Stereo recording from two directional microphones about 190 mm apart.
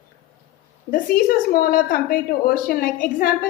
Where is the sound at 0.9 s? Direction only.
50° left (ahead or behind).